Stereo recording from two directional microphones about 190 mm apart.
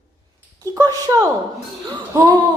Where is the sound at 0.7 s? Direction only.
20° right (ahead or behind).